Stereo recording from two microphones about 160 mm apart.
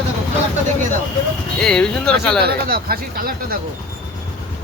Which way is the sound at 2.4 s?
70° right (ahead or behind).